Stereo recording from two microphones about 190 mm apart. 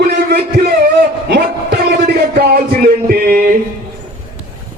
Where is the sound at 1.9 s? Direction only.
55° right (ahead or behind).